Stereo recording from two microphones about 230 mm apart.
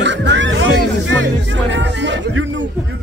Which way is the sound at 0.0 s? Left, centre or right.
Right.